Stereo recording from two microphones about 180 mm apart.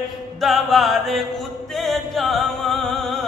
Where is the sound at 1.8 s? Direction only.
Centre (ahead or behind).